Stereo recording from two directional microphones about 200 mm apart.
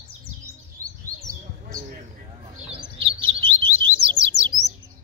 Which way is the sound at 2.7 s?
25° right (ahead or behind).